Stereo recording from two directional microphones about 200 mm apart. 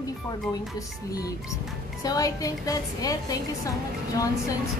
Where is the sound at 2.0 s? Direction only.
15° left (ahead or behind).